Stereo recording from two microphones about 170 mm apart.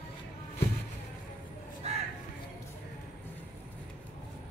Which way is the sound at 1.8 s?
40° right (ahead or behind).